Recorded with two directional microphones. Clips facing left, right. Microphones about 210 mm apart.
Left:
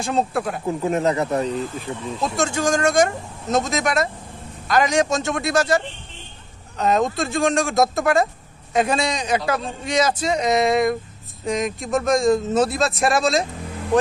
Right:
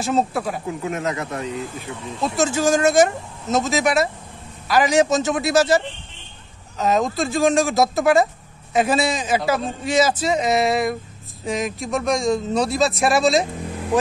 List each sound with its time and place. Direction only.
0.0 s a man's voice: centre (ahead or behind)
0.7 s speech: 35° left (ahead or behind)
2.3 s a man's voice: 5° right (ahead or behind)
6.8 s a man's voice: centre (ahead or behind)